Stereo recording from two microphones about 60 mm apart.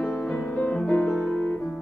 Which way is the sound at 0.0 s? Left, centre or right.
Centre.